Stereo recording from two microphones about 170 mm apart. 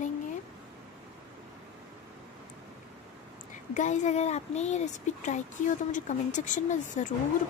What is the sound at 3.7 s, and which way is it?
Speech, 45° left (ahead or behind).